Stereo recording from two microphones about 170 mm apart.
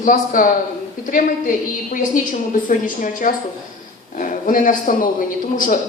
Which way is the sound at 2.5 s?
50° left (ahead or behind).